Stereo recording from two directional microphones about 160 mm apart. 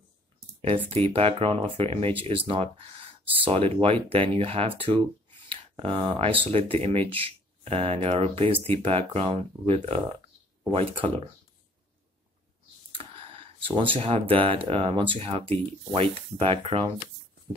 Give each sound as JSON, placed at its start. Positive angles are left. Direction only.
{"t": 1.1, "sound": "speech", "side_deg": -35}
{"t": 13.6, "sound": "speech", "side_deg": -35}